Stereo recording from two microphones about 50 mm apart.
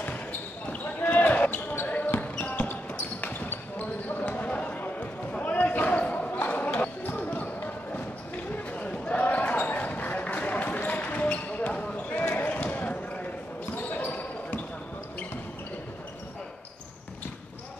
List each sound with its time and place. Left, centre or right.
0.7 s basketball bounce: left